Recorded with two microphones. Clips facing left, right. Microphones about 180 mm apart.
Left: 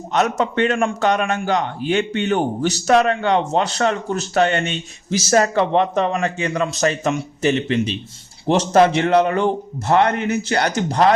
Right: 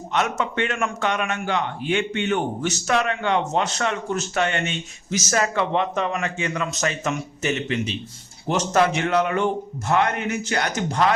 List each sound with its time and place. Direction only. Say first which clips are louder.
0.1 s a man's voice: left 5 dB; 35° left (ahead or behind)